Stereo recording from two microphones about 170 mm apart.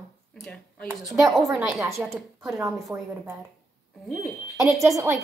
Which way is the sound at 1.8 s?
15° right (ahead or behind).